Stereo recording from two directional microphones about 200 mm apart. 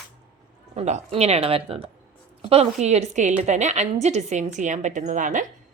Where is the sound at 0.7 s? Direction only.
35° right (ahead or behind).